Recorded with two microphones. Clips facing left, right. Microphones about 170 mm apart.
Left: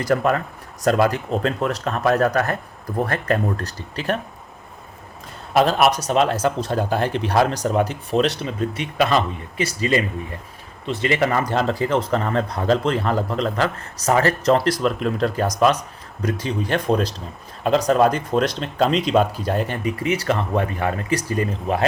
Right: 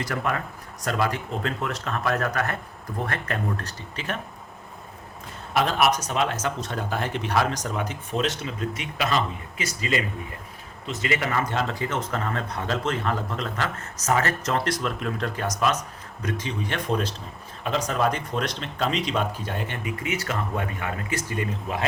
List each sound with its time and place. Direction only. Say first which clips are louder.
0.0 s speech: left 8 dB; 35° left (ahead or behind)
5.5 s speech: left 5 dB; 35° left (ahead or behind)
11.2 s speech: left 6 dB; 40° left (ahead or behind)